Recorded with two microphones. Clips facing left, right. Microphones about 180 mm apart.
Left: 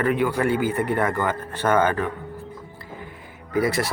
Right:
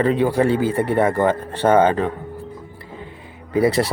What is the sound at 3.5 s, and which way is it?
Speech, 30° right (ahead or behind).